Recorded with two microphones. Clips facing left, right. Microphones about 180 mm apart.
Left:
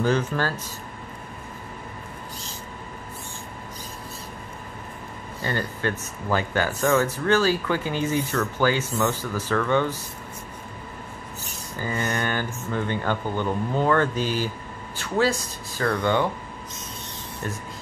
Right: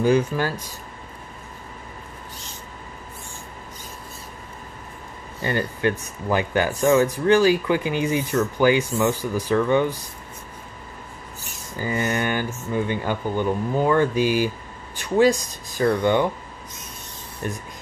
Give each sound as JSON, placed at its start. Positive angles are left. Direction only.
{"t": 0.0, "sound": "speech", "side_deg": -10}
{"t": 5.4, "sound": "speech", "side_deg": -15}
{"t": 11.8, "sound": "speech", "side_deg": -15}